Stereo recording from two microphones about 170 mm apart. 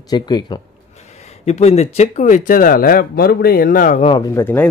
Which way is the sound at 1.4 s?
40° left (ahead or behind).